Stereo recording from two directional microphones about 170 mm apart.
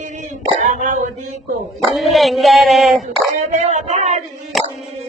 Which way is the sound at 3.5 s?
45° right (ahead or behind).